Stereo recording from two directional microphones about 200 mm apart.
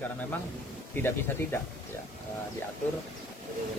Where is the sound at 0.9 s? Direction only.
10° left (ahead or behind).